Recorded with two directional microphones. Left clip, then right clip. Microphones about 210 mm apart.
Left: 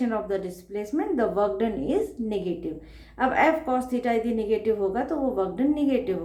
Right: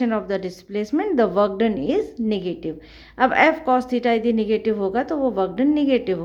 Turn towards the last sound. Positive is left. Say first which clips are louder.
# right 5 dB
turn(degrees=-35)  # may be behind; listen again after turning